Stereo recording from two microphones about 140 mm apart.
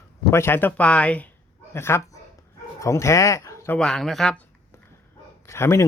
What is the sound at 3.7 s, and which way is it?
Speech, 5° left (ahead or behind).